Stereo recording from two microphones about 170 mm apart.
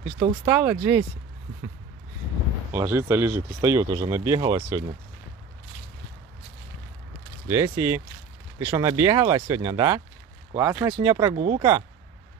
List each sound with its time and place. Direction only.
0.5 s speech: 10° right (ahead or behind)
2.7 s speech: 15° right (ahead or behind)
7.4 s speech: 15° right (ahead or behind)
11.3 s speech: 45° right (ahead or behind)